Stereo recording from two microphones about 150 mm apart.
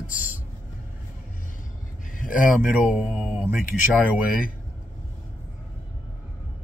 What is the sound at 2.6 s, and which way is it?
Speech, 5° right (ahead or behind).